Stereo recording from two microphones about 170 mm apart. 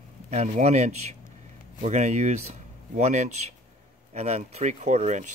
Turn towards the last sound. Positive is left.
turn(degrees=-45)  # may be behind; listen again after turning